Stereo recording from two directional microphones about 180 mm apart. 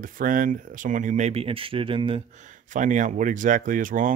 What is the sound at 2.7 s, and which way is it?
Speech, 45° right (ahead or behind).